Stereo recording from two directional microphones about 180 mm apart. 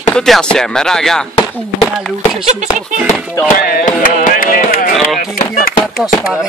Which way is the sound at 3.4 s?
50° left (ahead or behind).